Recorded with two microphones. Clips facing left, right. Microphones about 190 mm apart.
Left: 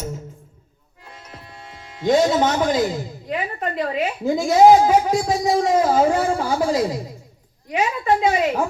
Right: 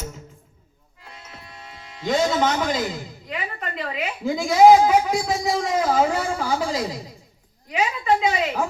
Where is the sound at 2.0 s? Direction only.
45° left (ahead or behind).